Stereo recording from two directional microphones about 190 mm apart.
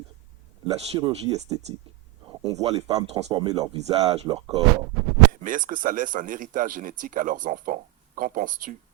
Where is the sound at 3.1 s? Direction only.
35° right (ahead or behind).